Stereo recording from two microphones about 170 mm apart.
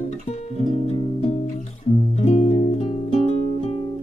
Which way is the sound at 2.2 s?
40° left (ahead or behind).